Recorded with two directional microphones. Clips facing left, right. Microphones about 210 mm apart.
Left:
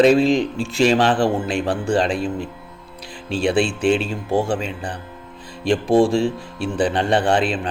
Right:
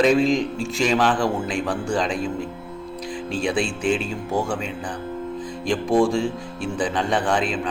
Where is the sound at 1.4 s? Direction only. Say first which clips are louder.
Left 3 dB; 60° left (ahead or behind).